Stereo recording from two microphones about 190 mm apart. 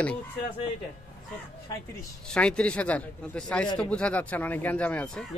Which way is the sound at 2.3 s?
5° left (ahead or behind).